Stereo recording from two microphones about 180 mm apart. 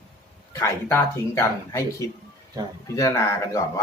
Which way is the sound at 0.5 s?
15° left (ahead or behind).